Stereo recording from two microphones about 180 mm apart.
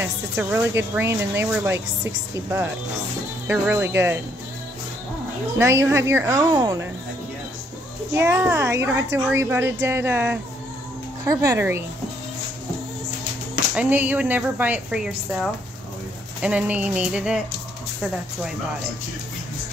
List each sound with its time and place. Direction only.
0.0 s speech: 10° right (ahead or behind)
5.6 s speech: 15° right (ahead or behind)
8.1 s speech: 15° right (ahead or behind)
13.7 s speech: 10° right (ahead or behind)